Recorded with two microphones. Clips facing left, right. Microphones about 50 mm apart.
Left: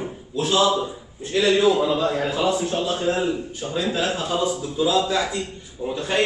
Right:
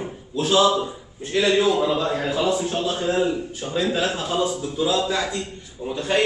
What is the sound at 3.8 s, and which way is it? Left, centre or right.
Speech, centre.